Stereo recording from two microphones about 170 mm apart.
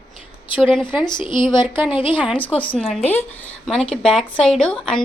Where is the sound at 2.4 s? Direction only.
10° left (ahead or behind).